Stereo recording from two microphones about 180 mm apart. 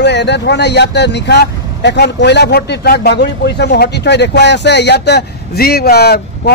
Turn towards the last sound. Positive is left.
turn(degrees=60)  # may be behind; listen again after turning